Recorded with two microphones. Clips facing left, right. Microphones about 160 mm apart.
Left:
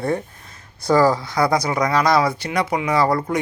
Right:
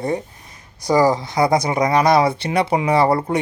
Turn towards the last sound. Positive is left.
turn(degrees=-30)  # may be behind; listen again after turning